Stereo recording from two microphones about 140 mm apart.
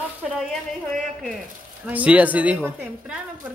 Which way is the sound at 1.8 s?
10° right (ahead or behind).